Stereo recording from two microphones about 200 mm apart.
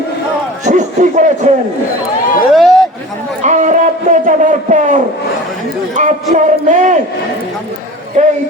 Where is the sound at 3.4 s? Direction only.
35° right (ahead or behind).